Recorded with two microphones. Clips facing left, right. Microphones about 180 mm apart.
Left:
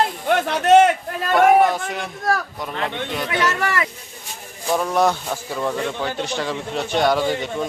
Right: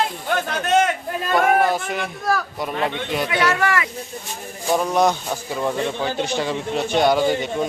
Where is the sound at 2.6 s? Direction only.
10° right (ahead or behind).